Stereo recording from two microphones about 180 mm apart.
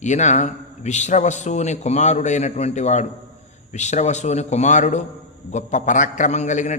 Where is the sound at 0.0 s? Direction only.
40° left (ahead or behind).